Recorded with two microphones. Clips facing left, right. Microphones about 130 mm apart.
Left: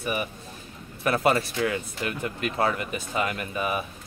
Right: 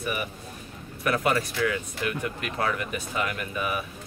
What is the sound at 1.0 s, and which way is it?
Speech, 30° left (ahead or behind).